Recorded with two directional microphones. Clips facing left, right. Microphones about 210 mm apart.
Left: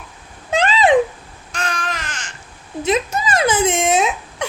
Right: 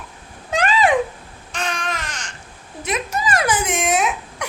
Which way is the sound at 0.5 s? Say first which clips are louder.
Left 2 dB; 25° left (ahead or behind).